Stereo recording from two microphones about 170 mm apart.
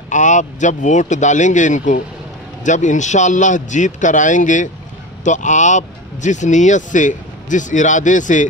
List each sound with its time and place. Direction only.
0.1 s speech: 45° left (ahead or behind)